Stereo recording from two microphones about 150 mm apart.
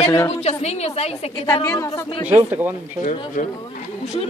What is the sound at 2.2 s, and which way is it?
Speech, 10° right (ahead or behind).